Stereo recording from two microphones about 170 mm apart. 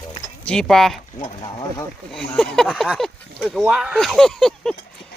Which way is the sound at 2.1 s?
5° left (ahead or behind).